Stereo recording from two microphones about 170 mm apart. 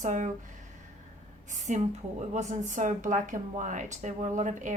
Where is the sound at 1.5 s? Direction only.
45° right (ahead or behind).